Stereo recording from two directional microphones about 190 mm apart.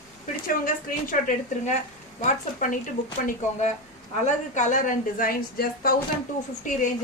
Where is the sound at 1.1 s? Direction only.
45° left (ahead or behind).